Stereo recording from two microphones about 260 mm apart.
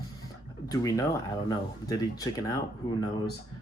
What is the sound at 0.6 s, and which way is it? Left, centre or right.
Speech, centre.